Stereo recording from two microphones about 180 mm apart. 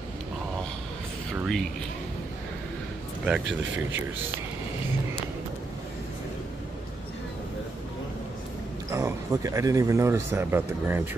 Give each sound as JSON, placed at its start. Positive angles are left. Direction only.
{"t": 1.4, "sound": "speech", "side_deg": 0}
{"t": 8.9, "sound": "speech", "side_deg": -15}